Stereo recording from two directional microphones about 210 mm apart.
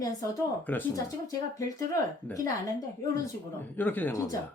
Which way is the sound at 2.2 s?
15° left (ahead or behind).